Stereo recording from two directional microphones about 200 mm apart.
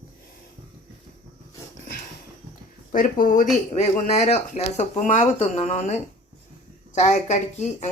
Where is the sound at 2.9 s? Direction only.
40° left (ahead or behind).